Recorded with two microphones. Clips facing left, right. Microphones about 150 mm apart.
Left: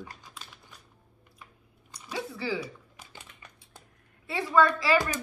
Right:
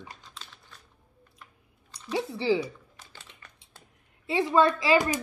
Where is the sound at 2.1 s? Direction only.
25° right (ahead or behind).